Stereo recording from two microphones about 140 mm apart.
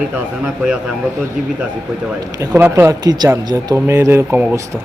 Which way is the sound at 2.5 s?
15° right (ahead or behind).